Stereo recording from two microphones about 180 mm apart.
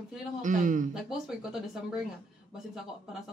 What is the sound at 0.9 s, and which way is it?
Speech, 5° right (ahead or behind).